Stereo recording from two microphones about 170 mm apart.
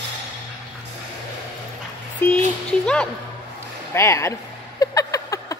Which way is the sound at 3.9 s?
15° left (ahead or behind).